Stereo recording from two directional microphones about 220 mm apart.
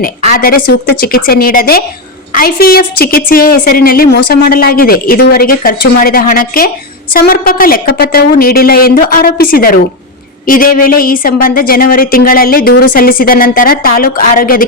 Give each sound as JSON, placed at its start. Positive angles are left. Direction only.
{"t": 0.3, "sound": "a woman's voice", "side_deg": 40}